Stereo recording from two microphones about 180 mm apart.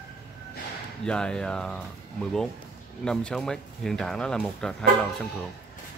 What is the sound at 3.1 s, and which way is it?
Speech, 5° left (ahead or behind).